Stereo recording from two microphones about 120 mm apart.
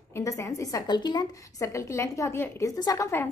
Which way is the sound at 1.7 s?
25° left (ahead or behind).